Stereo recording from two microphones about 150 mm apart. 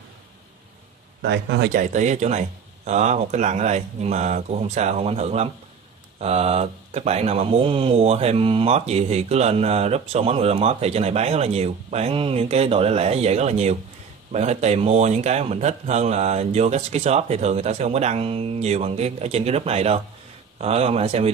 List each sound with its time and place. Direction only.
1.6 s speech: 70° right (ahead or behind); by 21.3 s 45° right (ahead or behind)